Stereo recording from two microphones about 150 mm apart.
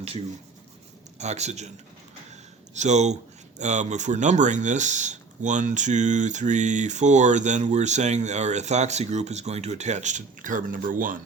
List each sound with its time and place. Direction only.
1.2 s speech: 50° right (ahead or behind)
2.3 s a sound: 50° right (ahead or behind)
3.6 s speech: 50° right (ahead or behind)